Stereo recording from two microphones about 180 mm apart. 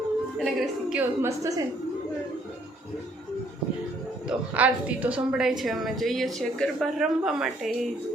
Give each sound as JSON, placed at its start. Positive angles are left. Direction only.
{"t": 0.3, "sound": "speech", "side_deg": -5}
{"t": 1.2, "sound": "a woman's voice", "side_deg": -20}
{"t": 4.3, "sound": "a woman's voice", "side_deg": -10}